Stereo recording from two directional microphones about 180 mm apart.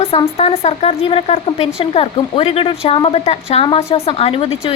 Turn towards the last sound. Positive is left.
turn(degrees=35)  # may be behind; listen again after turning